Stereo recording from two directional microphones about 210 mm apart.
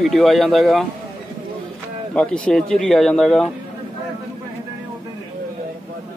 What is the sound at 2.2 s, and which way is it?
Speech, 5° left (ahead or behind).